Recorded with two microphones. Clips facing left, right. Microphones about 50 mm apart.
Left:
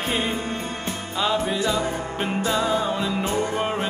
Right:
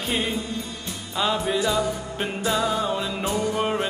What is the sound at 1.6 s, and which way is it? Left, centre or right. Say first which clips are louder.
Music: even; left.